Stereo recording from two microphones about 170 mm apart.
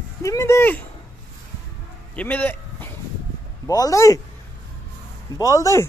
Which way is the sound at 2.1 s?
10° left (ahead or behind).